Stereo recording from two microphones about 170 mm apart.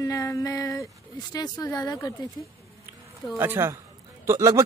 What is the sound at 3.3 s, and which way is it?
Speech, 15° right (ahead or behind).